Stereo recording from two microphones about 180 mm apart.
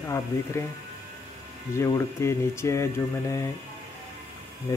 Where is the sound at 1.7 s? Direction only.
15° left (ahead or behind).